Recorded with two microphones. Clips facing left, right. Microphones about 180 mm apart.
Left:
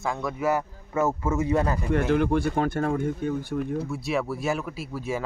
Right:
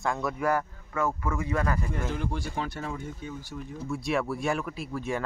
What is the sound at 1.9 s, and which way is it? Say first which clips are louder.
Speech: left 10 dB; 65° left (ahead or behind).